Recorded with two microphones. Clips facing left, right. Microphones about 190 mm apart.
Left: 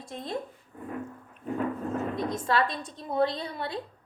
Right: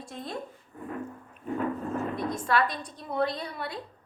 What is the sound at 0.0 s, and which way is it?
Speech, 20° left (ahead or behind).